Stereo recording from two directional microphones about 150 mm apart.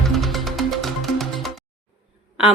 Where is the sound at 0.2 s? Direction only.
Centre (ahead or behind).